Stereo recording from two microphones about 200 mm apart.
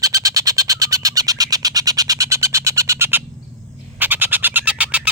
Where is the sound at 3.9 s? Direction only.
10° right (ahead or behind).